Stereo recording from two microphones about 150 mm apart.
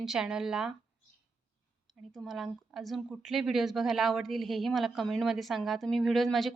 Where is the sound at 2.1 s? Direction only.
Centre (ahead or behind).